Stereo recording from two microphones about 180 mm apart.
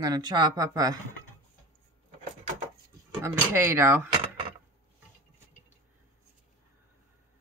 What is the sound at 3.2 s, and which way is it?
Speech, 15° right (ahead or behind).